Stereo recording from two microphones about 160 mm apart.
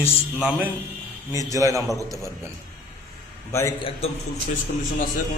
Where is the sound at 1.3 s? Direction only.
20° right (ahead or behind).